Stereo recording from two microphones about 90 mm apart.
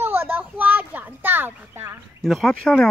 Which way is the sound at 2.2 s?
5° left (ahead or behind).